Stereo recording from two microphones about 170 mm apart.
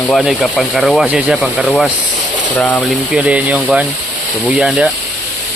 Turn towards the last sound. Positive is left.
turn(degrees=-5)  # may be behind; listen again after turning